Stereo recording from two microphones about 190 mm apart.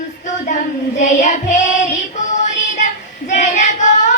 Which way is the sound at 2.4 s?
40° left (ahead or behind).